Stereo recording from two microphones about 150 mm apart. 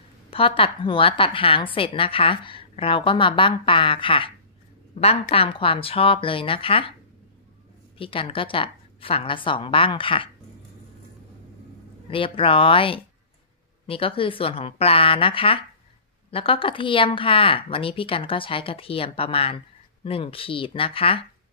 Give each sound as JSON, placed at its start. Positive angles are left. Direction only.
{"t": 0.3, "sound": "a woman's voice", "side_deg": 35}
{"t": 8.0, "sound": "speech", "side_deg": 35}
{"t": 12.1, "sound": "speech", "side_deg": 35}